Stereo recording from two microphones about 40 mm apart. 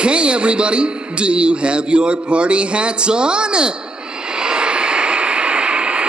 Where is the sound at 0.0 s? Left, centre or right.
Right.